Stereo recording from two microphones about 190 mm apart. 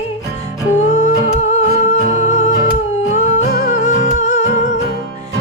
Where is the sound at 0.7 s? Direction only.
40° left (ahead or behind).